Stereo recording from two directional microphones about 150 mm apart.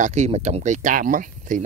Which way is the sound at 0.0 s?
50° right (ahead or behind).